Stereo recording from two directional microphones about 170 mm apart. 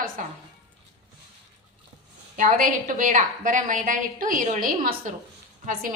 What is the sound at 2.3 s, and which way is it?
A woman's voice, 50° right (ahead or behind).